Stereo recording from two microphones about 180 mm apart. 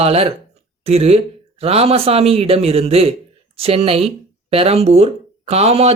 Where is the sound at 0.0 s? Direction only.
35° right (ahead or behind).